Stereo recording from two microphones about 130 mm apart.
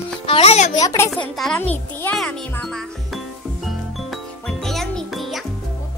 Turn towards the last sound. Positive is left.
turn(degrees=0)  # may be behind; listen again after turning